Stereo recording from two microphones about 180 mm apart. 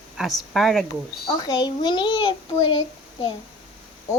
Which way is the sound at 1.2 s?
25° left (ahead or behind).